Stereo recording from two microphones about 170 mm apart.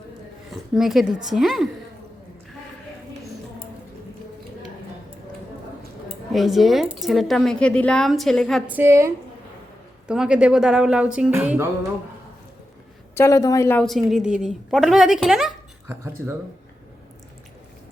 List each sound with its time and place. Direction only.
0.5 s a woman's voice: centre (ahead or behind)
6.3 s a woman's voice: centre (ahead or behind)
10.1 s a woman's voice: 5° right (ahead or behind)
13.1 s a woman's voice: 20° left (ahead or behind)
13.8 s a woman's voice: centre (ahead or behind)
15.9 s speech: 15° right (ahead or behind)